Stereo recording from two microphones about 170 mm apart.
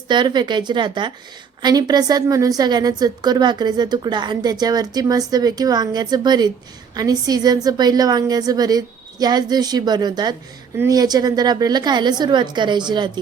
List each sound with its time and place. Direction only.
0.1 s a woman's voice: 25° right (ahead or behind)